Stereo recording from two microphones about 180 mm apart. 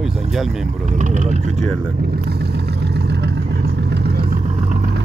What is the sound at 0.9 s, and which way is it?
Speech, 45° right (ahead or behind).